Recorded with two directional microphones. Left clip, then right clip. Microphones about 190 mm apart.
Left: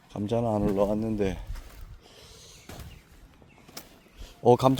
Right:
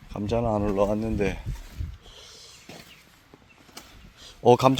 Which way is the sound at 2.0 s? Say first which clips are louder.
Right 3 dB; 15° left (ahead or behind).